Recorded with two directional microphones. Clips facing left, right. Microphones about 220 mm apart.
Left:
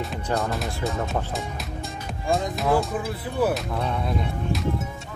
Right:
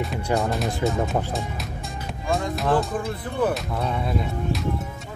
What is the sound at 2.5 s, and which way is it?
Speech, centre (ahead or behind).